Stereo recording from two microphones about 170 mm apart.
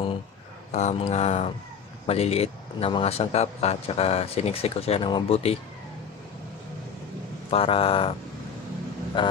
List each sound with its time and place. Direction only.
0.7 s a man's voice: 40° left (ahead or behind)
7.5 s a man's voice: 35° left (ahead or behind)
9.2 s a man's voice: 30° left (ahead or behind)